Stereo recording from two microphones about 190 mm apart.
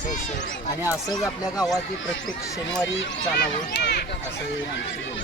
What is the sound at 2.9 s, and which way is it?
Speech, 60° left (ahead or behind).